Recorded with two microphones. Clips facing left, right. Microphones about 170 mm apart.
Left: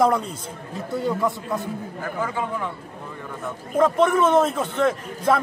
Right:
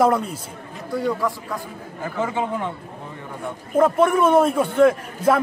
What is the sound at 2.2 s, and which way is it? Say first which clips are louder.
Speech: right 3 dB; 25° right (ahead or behind).